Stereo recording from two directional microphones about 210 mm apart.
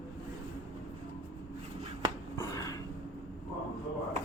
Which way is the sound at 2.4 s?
15° left (ahead or behind).